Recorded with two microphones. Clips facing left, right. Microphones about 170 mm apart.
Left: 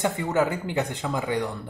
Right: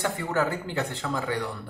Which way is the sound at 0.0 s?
20° left (ahead or behind).